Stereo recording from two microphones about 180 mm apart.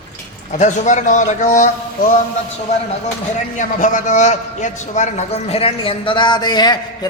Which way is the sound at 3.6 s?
45° left (ahead or behind).